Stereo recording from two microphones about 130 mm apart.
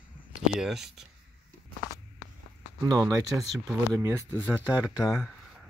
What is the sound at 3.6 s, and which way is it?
Speech, 20° right (ahead or behind).